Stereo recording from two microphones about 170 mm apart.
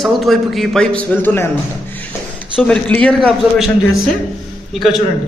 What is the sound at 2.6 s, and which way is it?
A man's voice, 5° left (ahead or behind).